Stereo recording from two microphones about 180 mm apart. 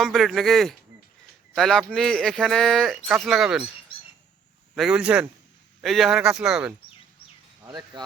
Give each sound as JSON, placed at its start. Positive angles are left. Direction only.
{"t": 0.0, "sound": "speech", "side_deg": 0}
{"t": 4.7, "sound": "speech", "side_deg": -5}
{"t": 7.6, "sound": "speech", "side_deg": -20}